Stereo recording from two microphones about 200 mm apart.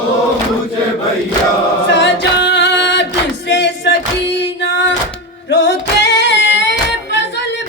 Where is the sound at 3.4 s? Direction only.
65° left (ahead or behind).